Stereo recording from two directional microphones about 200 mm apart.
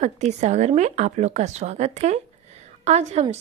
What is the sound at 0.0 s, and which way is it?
Speech, 35° right (ahead or behind).